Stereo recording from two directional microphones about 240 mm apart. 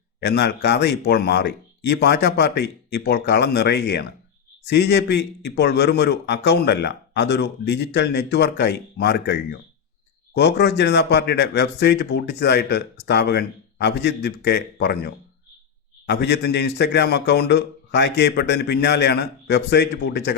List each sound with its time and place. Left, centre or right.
0.2 s a man's voice: left